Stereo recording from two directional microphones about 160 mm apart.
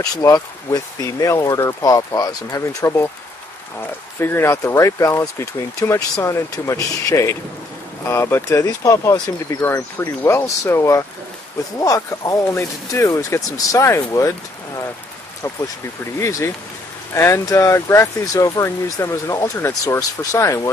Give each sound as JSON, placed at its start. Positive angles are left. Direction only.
{"t": 0.0, "sound": "speech", "side_deg": 25}
{"t": 4.2, "sound": "speech", "side_deg": 15}
{"t": 16.2, "sound": "speech", "side_deg": 20}